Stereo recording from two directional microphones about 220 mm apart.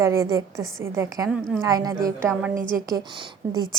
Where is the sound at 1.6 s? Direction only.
15° right (ahead or behind).